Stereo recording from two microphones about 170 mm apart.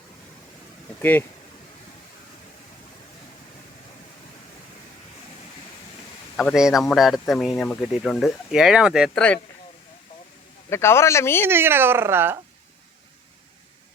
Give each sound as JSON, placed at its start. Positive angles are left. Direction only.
{"t": 6.3, "sound": "speech", "side_deg": 0}
{"t": 10.7, "sound": "speech", "side_deg": 15}
{"t": 11.4, "sound": "speech", "side_deg": -15}